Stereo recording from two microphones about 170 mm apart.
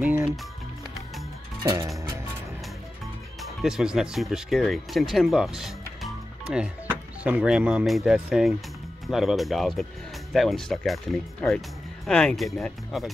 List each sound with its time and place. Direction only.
0.0 s music: 10° right (ahead or behind)
1.6 s music: 20° right (ahead or behind)
3.3 s speech: 5° right (ahead or behind)